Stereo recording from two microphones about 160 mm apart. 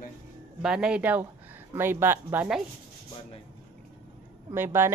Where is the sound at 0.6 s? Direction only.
5° right (ahead or behind).